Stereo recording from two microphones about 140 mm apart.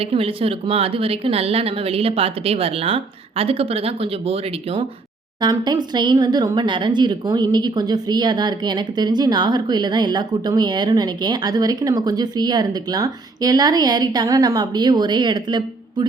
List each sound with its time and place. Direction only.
0.0 s speech: 45° right (ahead or behind)